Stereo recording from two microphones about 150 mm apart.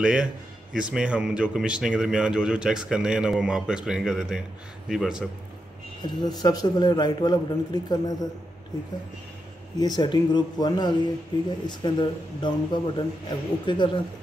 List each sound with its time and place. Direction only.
0.0 s a man's voice: 5° right (ahead or behind)
6.0 s a man's voice: 25° left (ahead or behind)
9.8 s a man's voice: 25° left (ahead or behind)